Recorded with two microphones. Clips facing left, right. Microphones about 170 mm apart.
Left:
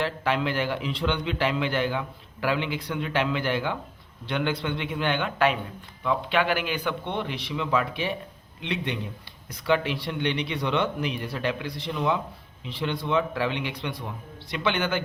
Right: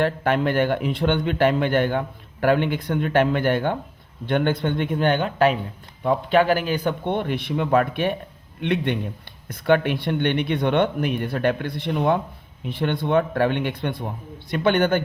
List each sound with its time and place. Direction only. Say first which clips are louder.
0.0 s a man's voice: right 5 dB; 50° right (ahead or behind)